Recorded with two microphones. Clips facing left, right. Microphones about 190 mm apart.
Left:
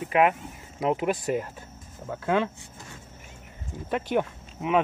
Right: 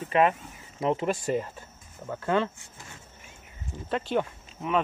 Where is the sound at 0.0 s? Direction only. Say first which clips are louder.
Left 1 dB; 10° left (ahead or behind).